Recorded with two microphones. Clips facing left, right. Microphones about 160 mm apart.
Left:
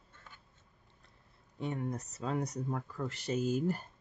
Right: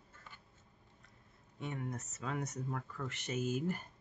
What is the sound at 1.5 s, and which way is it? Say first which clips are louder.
Speech: left 5 dB; 35° left (ahead or behind).